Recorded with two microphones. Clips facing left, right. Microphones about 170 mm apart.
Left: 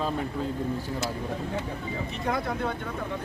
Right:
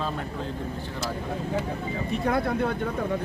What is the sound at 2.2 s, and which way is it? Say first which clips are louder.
Speech: right 4 dB; 55° right (ahead or behind).